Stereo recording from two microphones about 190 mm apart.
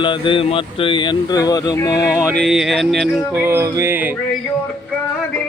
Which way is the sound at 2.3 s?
Centre (ahead or behind).